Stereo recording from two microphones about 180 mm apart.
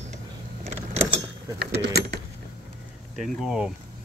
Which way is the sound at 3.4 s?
Centre (ahead or behind).